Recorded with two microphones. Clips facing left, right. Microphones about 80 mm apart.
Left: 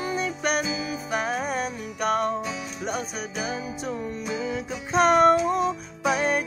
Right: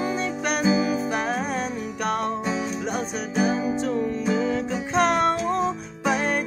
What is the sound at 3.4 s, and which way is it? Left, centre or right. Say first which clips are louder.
Music: right 9 dB; centre.